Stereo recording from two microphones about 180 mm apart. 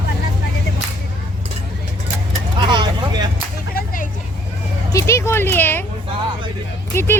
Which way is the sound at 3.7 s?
50° left (ahead or behind).